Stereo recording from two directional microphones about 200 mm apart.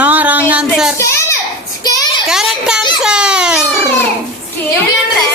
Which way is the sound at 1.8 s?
20° left (ahead or behind).